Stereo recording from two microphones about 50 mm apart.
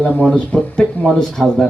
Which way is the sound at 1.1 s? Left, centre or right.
Centre.